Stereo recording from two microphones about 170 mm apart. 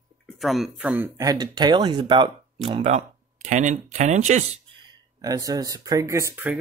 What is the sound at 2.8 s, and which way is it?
Speech, 45° right (ahead or behind).